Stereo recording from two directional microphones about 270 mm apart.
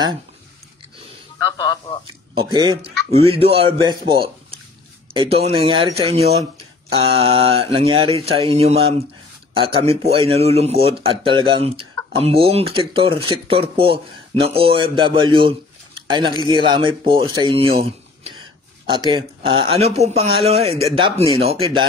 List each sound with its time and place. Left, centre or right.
1.6 s speech: centre
2.3 s speech: centre
5.1 s speech: right